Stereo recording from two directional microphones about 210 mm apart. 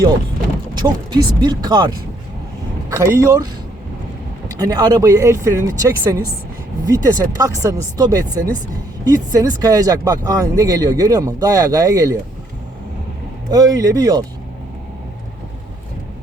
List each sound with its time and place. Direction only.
0.7 s speech: 20° right (ahead or behind)
2.9 s speech: 15° right (ahead or behind)
4.6 s speech: 15° right (ahead or behind)
13.5 s speech: 15° right (ahead or behind)